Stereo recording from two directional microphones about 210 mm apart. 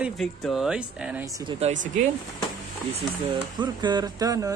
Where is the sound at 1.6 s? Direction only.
35° right (ahead or behind).